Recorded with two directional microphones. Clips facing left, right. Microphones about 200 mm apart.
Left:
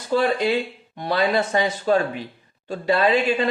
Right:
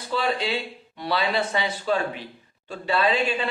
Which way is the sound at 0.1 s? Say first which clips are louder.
Left 6 dB; 45° left (ahead or behind).